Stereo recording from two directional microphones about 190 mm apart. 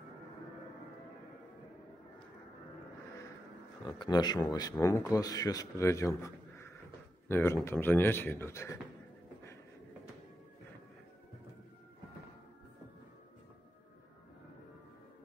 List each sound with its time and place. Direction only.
3.8 s speech: 20° left (ahead or behind)